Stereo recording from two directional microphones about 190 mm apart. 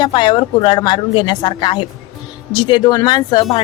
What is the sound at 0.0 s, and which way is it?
Speech, 25° left (ahead or behind).